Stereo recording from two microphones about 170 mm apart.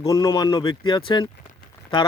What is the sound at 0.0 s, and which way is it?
Speech, 20° left (ahead or behind).